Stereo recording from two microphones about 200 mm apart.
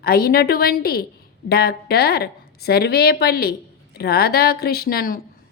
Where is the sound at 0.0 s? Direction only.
50° left (ahead or behind).